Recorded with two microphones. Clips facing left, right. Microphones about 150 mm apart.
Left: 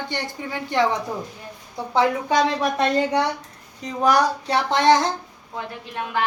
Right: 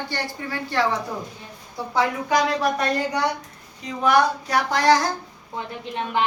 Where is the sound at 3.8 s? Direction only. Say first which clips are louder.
Even; 40° left (ahead or behind).